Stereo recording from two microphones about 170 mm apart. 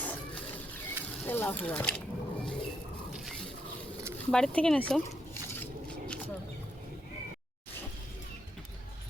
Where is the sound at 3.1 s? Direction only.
Centre (ahead or behind).